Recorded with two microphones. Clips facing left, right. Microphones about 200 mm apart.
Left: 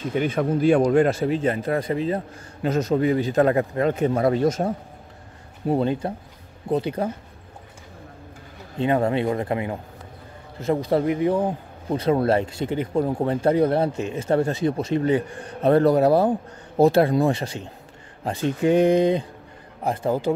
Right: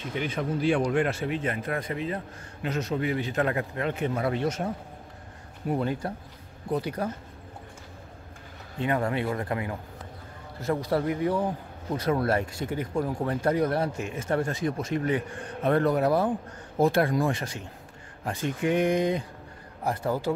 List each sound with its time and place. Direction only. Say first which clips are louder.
0.1 s speech: left 7 dB; 50° left (ahead or behind)
0.9 s a man's voice: left 7 dB; 35° left (ahead or behind)
5.7 s a man's voice: left 6 dB; 25° left (ahead or behind)
8.7 s a man's voice: left 6 dB; 25° left (ahead or behind)